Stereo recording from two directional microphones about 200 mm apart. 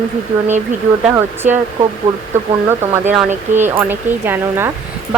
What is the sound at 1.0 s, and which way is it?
Speech, 10° right (ahead or behind).